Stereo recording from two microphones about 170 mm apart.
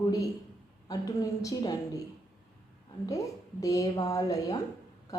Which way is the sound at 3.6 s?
20° left (ahead or behind).